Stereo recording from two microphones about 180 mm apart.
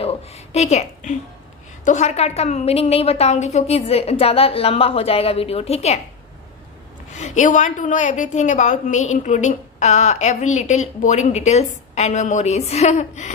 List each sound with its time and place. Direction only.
0.0 s music: 35° left (ahead or behind)
1.9 s a woman's voice: 40° left (ahead or behind)
7.1 s a woman's voice: 40° left (ahead or behind)